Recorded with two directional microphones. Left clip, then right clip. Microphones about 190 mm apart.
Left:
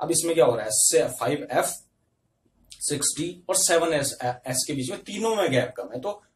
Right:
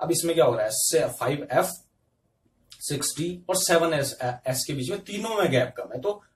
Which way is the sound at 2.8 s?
15° left (ahead or behind).